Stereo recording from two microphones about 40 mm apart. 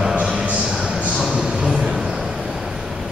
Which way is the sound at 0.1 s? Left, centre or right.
Right.